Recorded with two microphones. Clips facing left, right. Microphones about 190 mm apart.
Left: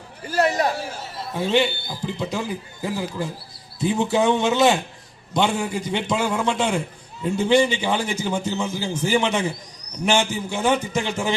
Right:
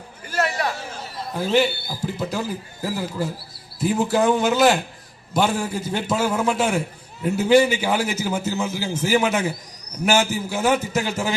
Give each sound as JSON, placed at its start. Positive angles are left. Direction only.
{"t": 0.3, "sound": "a man's voice", "side_deg": 35}
{"t": 1.3, "sound": "a man's voice", "side_deg": 0}